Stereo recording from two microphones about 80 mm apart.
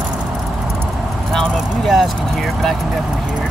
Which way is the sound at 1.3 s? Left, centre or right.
Centre.